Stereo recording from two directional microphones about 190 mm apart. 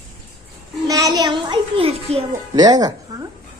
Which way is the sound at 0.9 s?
20° right (ahead or behind).